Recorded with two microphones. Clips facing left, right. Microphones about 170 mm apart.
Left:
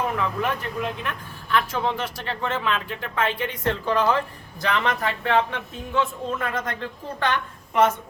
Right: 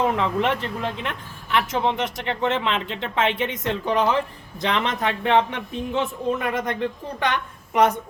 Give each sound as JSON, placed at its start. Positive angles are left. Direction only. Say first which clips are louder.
{"t": 0.0, "sound": "a woman's voice", "louder": "right 4 dB", "side_deg": -25}